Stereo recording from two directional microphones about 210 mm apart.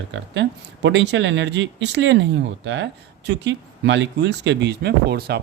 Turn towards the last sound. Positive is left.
turn(degrees=-50)  # may be behind; listen again after turning